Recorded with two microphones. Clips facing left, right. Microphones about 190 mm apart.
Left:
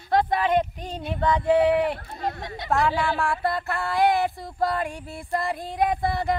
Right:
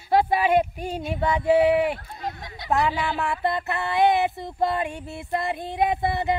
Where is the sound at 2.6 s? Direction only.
20° right (ahead or behind).